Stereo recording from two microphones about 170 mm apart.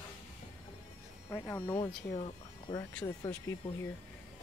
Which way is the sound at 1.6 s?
25° left (ahead or behind).